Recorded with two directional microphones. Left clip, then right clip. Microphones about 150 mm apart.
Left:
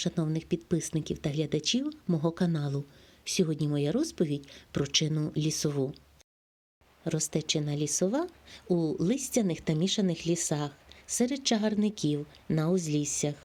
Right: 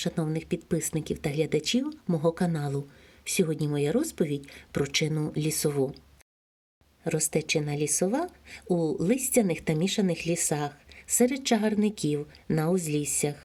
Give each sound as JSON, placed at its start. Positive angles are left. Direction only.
{"t": 0.0, "sound": "speech", "side_deg": 30}
{"t": 7.0, "sound": "speech", "side_deg": 30}